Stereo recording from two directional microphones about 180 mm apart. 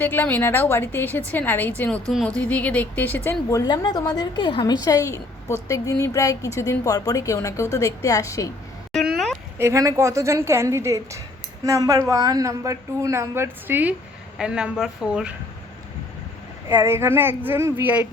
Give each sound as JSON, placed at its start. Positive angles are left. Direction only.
{"t": 0.0, "sound": "a woman's voice", "side_deg": 10}
{"t": 8.9, "sound": "a sound", "side_deg": 0}
{"t": 9.6, "sound": "a woman's voice", "side_deg": -15}
{"t": 16.6, "sound": "a woman's voice", "side_deg": -15}